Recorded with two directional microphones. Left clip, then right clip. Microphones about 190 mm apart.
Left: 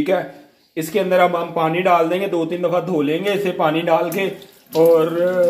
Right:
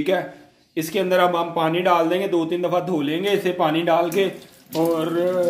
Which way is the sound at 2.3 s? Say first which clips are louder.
Left 2 dB; 10° right (ahead or behind).